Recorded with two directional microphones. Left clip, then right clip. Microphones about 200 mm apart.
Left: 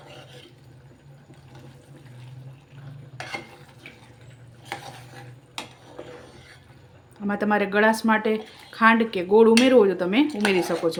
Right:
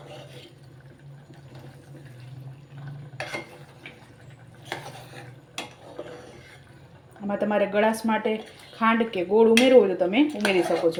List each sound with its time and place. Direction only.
7.3 s speech: 15° left (ahead or behind)